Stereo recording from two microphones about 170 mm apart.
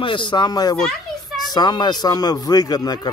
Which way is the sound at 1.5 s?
25° left (ahead or behind).